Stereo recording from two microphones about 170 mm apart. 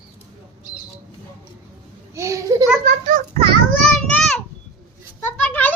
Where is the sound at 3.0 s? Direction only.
50° right (ahead or behind).